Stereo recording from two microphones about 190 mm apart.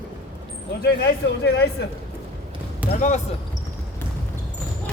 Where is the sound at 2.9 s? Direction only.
40° left (ahead or behind).